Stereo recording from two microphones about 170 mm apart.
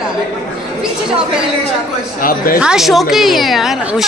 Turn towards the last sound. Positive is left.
turn(degrees=0)  # may be behind; listen again after turning